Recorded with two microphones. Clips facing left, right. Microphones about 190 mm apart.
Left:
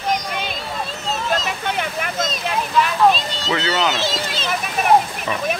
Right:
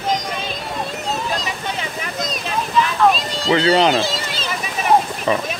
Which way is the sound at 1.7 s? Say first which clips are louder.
Left 3 dB; 60° left (ahead or behind).